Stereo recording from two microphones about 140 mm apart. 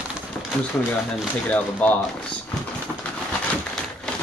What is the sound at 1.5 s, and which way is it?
Speech, 10° left (ahead or behind).